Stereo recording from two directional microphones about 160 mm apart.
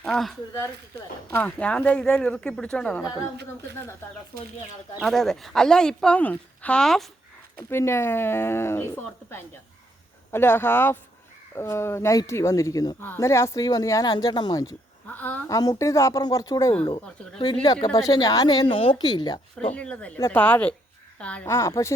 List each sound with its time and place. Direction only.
0.0 s speech: 5° left (ahead or behind)
4.9 s speech: centre (ahead or behind)
7.7 s speech: 15° left (ahead or behind)
15.0 s speech: 10° left (ahead or behind)
15.4 s speech: 25° left (ahead or behind)
19.7 s speech: 5° left (ahead or behind)